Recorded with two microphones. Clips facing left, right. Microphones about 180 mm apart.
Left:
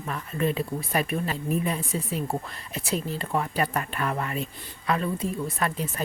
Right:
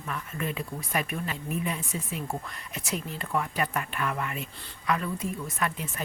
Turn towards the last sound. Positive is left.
turn(degrees=35)  # may be behind; listen again after turning